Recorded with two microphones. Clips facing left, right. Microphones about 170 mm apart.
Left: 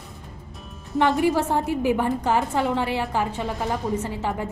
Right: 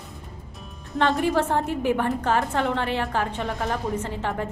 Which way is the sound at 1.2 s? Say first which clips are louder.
Left 1 dB; 10° left (ahead or behind).